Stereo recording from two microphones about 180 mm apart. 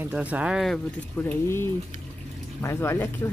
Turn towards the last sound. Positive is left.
turn(degrees=15)  # may be behind; listen again after turning